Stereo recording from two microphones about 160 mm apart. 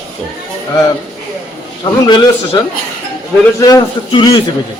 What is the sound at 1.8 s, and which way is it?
Speech, 25° left (ahead or behind).